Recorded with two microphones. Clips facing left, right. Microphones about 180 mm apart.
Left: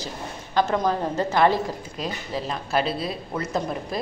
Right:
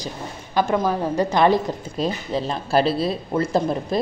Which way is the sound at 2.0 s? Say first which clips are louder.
Right 7 dB; 30° right (ahead or behind).